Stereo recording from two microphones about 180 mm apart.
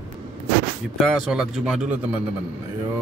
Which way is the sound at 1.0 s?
Centre (ahead or behind).